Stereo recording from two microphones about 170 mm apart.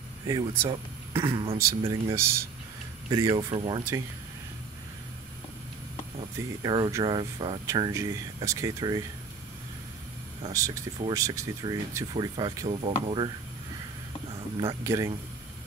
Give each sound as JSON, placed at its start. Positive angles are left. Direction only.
{"t": 0.3, "sound": "speech", "side_deg": -20}
{"t": 1.3, "sound": "speech", "side_deg": -35}
{"t": 1.9, "sound": "speech", "side_deg": -15}
{"t": 6.3, "sound": "speech", "side_deg": -25}
{"t": 10.5, "sound": "speech", "side_deg": -20}
{"t": 14.6, "sound": "speech", "side_deg": -20}